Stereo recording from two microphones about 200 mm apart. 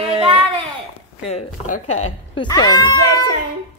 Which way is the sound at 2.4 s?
20° left (ahead or behind).